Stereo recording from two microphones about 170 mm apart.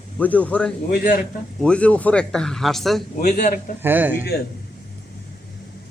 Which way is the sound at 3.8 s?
10° right (ahead or behind).